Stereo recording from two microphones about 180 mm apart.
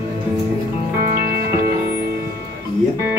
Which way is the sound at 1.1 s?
60° right (ahead or behind).